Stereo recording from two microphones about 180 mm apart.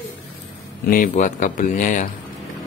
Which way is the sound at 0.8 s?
50° left (ahead or behind).